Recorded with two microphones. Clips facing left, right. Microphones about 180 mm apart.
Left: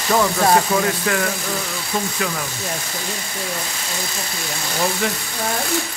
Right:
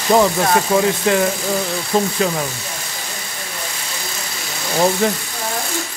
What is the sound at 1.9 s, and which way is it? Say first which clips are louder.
Speech: right 7 dB; 35° right (ahead or behind).